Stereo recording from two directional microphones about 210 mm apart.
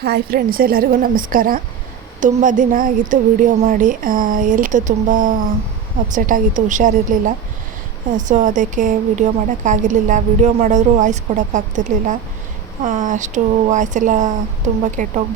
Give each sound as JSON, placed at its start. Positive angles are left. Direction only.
{"t": 0.0, "sound": "a woman's voice", "side_deg": -50}